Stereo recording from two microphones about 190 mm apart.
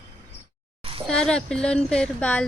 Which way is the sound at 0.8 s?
30° right (ahead or behind).